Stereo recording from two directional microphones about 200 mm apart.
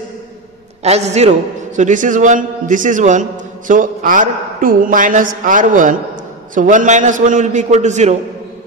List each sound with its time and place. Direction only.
0.8 s a man's voice: 35° right (ahead or behind)